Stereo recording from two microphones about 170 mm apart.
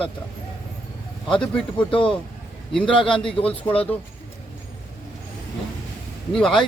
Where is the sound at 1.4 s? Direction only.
5° left (ahead or behind).